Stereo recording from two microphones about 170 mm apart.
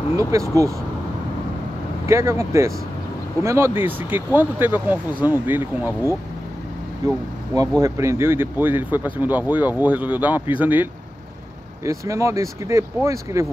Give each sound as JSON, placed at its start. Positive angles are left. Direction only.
{"t": 0.3, "sound": "speech", "side_deg": -15}
{"t": 2.0, "sound": "speech", "side_deg": -15}